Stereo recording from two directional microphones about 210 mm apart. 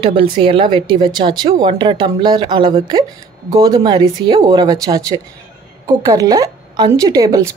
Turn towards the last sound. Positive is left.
turn(degrees=-15)  # may be behind; listen again after turning